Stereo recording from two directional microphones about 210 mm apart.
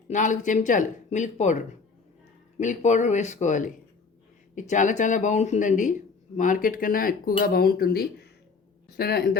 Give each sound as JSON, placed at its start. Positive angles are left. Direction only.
{"t": 0.1, "sound": "speech", "side_deg": 35}
{"t": 4.7, "sound": "speech", "side_deg": 35}